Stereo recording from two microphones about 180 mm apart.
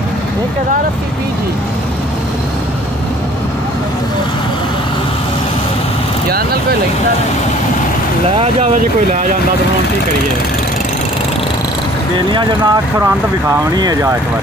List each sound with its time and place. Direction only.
8.4 s speech: 40° right (ahead or behind)
12.3 s speech: 25° right (ahead or behind)